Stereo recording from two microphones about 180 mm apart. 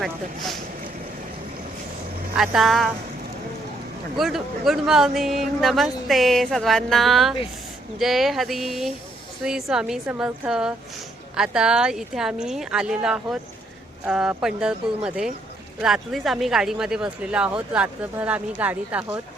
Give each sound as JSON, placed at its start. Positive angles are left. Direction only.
{"t": 2.4, "sound": "speech", "side_deg": 0}
{"t": 4.2, "sound": "speech", "side_deg": 0}